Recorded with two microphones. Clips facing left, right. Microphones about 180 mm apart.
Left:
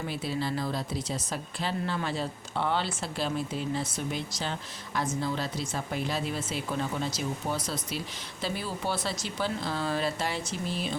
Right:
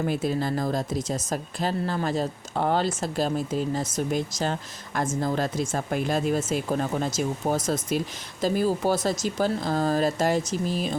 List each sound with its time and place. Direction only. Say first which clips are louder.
0.0 s speech: right 6 dB; 50° right (ahead or behind)